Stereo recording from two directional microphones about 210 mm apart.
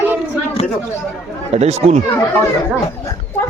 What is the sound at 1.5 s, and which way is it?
Speech, 30° right (ahead or behind).